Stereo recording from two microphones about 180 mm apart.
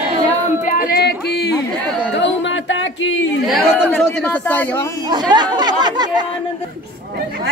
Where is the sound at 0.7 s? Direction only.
50° left (ahead or behind).